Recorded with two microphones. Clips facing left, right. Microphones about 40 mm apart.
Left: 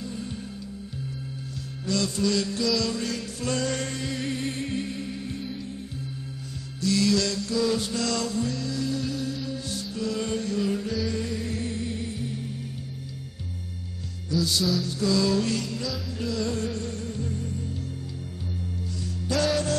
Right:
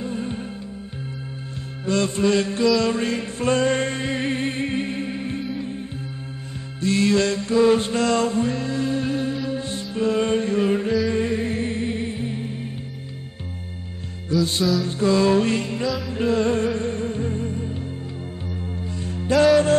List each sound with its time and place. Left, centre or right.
0.0 s music: right
1.9 s chant: right
6.8 s music: right
14.3 s music: right
14.9 s chant: right
16.1 s music: right
19.0 s music: right